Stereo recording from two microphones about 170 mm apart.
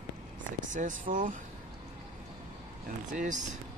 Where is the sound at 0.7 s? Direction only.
50° right (ahead or behind).